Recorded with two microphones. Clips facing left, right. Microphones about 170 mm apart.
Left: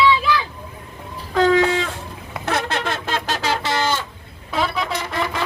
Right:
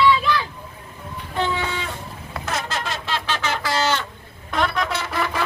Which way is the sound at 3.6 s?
15° left (ahead or behind).